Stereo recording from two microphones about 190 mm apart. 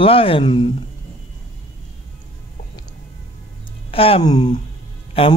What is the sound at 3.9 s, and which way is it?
Speech, 30° left (ahead or behind).